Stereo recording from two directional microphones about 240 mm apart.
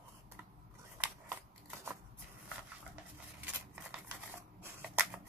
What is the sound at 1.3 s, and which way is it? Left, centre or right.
Scissors, centre.